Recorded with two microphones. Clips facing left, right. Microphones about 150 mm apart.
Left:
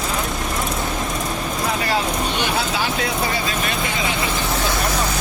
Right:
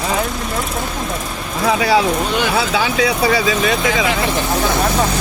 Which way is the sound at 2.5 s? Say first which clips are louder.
Right 5 dB; 85° right.